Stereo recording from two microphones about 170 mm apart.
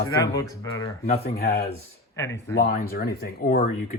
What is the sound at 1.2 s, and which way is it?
Speech, 65° left (ahead or behind).